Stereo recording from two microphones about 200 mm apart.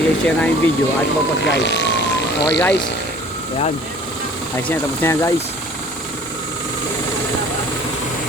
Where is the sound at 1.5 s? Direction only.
60° left (ahead or behind).